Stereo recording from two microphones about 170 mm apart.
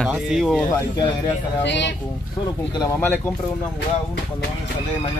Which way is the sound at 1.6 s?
90° left.